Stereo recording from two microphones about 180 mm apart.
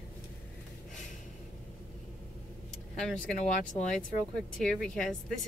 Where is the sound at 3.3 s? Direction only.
45° left (ahead or behind).